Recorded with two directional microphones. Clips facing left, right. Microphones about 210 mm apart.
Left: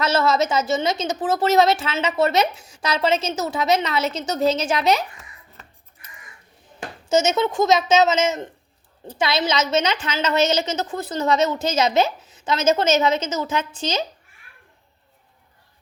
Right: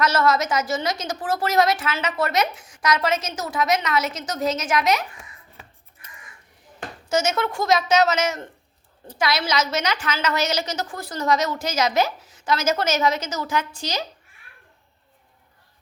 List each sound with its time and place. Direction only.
0.0 s a woman's voice: 25° left (ahead or behind)
7.1 s a woman's voice: 25° left (ahead or behind)